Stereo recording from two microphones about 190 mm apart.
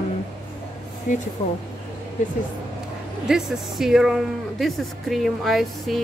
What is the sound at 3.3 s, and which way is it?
Speech, centre (ahead or behind).